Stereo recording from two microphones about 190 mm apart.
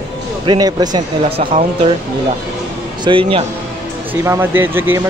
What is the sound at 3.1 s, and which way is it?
Speech, 30° right (ahead or behind).